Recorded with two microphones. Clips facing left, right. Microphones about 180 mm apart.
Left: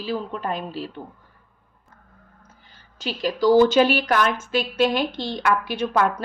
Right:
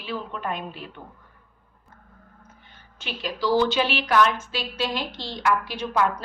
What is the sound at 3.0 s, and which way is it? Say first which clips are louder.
A woman's voice: left 7 dB; 40° left (ahead or behind).